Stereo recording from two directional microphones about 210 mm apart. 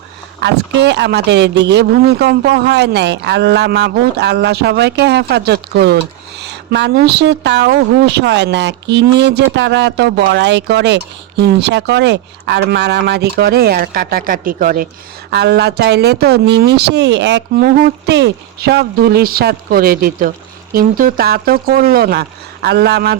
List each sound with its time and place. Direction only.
0.4 s a woman's voice: 55° right (ahead or behind)
15.3 s a woman's voice: 50° right (ahead or behind)